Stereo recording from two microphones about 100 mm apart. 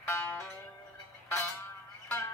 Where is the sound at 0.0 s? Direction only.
20° left (ahead or behind).